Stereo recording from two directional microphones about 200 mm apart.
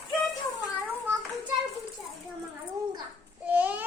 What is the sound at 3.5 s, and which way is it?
Child singing, 10° right (ahead or behind).